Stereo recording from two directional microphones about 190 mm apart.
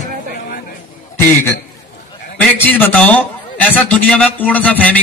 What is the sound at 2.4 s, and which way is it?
A man's voice, 10° left (ahead or behind).